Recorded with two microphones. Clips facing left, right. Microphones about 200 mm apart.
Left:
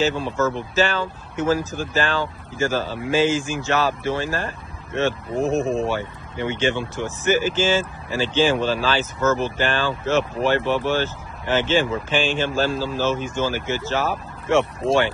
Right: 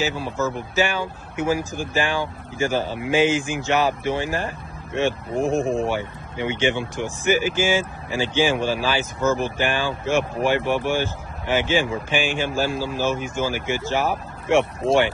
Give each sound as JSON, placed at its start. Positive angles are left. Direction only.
{"t": 0.0, "sound": "speech", "side_deg": -10}
{"t": 5.6, "sound": "speech", "side_deg": 20}
{"t": 5.9, "sound": "speech", "side_deg": -15}